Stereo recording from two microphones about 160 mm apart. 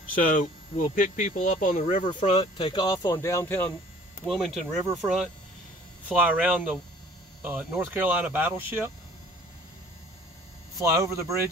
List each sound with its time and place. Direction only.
0.1 s speech: 55° left (ahead or behind)
2.5 s speech: 30° left (ahead or behind); by 3.7 s 15° left (ahead or behind)
4.3 s speech: centre (ahead or behind); by 8.9 s 15° right (ahead or behind)
10.8 s speech: 20° right (ahead or behind)